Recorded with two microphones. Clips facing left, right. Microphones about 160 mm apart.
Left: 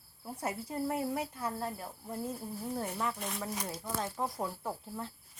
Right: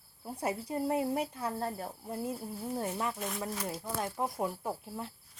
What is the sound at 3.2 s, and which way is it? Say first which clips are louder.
Speech: right 2 dB; centre (ahead or behind).